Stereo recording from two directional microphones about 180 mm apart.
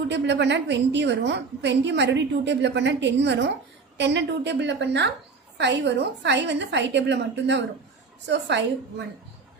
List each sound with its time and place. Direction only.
0.1 s a woman's voice: 75° right (ahead or behind)